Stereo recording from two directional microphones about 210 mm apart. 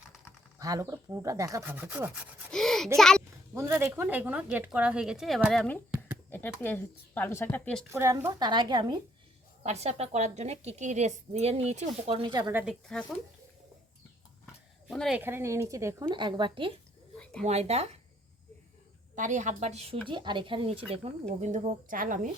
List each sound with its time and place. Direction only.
0.6 s rub: 15° right (ahead or behind); by 2.9 s centre (ahead or behind)
3.5 s rub: 10° right (ahead or behind); by 5.8 s 5° left (ahead or behind)
6.3 s speech: 10° left (ahead or behind)
7.9 s rub: 15° right (ahead or behind)
9.6 s a woman's voice: 30° right (ahead or behind)
12.6 s speech: centre (ahead or behind)
14.8 s a woman's voice: centre (ahead or behind)
15.2 s rub: 10° right (ahead or behind)
17.4 s a woman's voice: 30° right (ahead or behind)
19.1 s a woman's voice: 35° right (ahead or behind)